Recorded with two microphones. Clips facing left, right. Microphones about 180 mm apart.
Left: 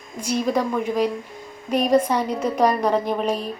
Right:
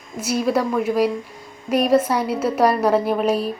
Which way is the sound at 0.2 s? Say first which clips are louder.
Right 2 dB; 5° right (ahead or behind).